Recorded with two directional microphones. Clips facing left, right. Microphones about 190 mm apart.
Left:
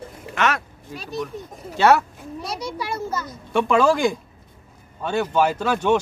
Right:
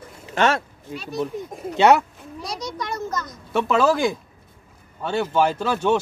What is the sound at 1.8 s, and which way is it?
Speech, 15° right (ahead or behind).